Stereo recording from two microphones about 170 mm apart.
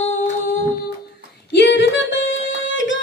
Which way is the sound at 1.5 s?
90° left.